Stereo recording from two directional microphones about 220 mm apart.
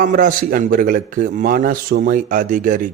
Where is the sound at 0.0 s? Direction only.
35° right (ahead or behind).